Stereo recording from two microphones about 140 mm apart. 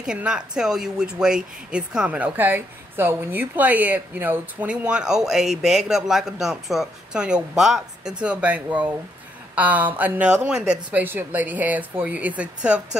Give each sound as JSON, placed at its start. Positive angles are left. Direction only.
{"t": 0.0, "sound": "speech", "side_deg": -5}